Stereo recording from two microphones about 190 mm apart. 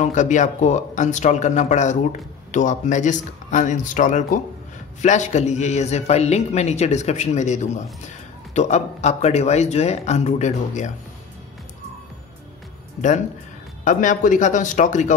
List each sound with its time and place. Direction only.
0.0 s speech: 40° left (ahead or behind)
13.8 s speech: 40° left (ahead or behind)